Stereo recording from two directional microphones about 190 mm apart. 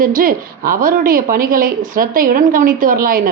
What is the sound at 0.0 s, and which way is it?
A woman's voice, 50° right (ahead or behind).